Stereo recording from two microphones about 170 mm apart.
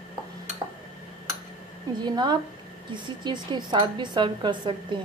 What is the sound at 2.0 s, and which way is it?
A woman's voice, 25° right (ahead or behind).